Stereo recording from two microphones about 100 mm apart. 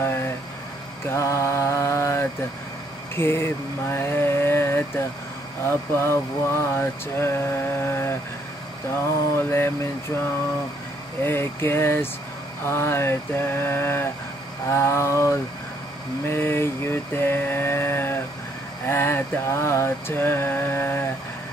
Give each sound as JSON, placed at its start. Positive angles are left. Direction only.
{"t": 0.0, "sound": "speech", "side_deg": 25}
{"t": 1.0, "sound": "mantra", "side_deg": 25}
{"t": 5.7, "sound": "speech", "side_deg": 25}
{"t": 11.2, "sound": "speech", "side_deg": 25}